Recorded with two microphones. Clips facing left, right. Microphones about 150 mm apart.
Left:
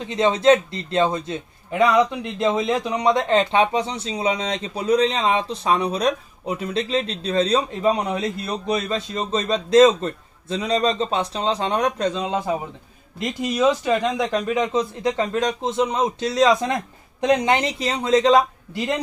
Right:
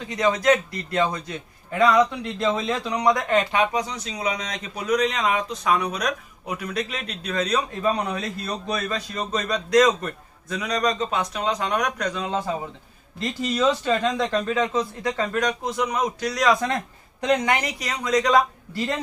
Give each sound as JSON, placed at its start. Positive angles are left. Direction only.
{"t": 0.0, "sound": "a man's voice", "side_deg": 25}